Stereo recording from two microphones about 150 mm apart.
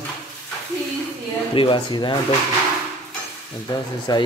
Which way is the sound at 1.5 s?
35° left (ahead or behind).